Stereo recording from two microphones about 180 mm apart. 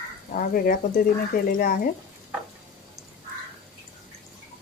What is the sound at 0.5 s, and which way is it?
Speech, 50° left (ahead or behind).